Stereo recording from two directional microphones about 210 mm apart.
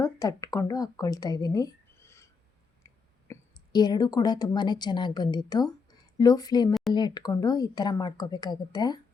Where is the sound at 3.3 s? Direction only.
20° left (ahead or behind).